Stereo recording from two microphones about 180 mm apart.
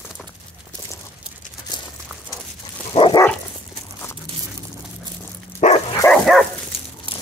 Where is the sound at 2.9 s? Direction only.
30° left (ahead or behind).